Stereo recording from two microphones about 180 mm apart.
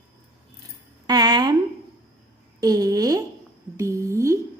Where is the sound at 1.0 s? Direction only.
20° right (ahead or behind).